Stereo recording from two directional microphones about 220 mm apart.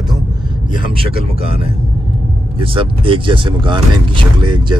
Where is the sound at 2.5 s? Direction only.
25° right (ahead or behind).